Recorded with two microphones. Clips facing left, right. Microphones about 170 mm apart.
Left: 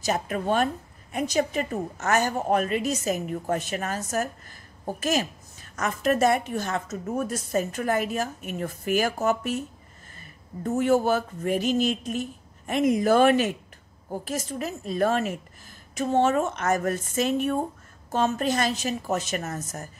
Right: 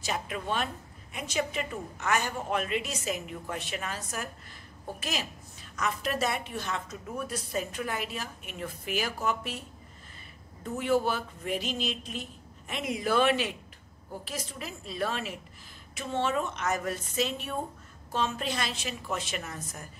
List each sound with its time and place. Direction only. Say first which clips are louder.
0.0 s a woman's voice: left 7 dB; 45° left (ahead or behind)
5.0 s a woman's voice: left 11 dB; 45° left (ahead or behind)